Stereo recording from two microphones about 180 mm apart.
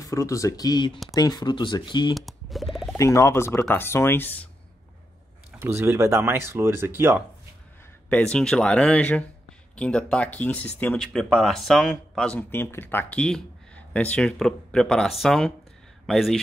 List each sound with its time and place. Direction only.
0.0 s speech: 15° left (ahead or behind)
2.1 s a sound: centre (ahead or behind)
3.0 s speech: 15° left (ahead or behind)
5.6 s speech: 15° right (ahead or behind)
8.1 s speech: 5° left (ahead or behind)